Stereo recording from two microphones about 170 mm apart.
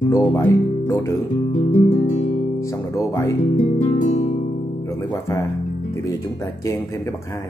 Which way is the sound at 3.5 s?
45° left (ahead or behind).